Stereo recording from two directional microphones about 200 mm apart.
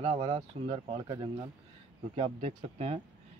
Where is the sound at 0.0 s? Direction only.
30° right (ahead or behind).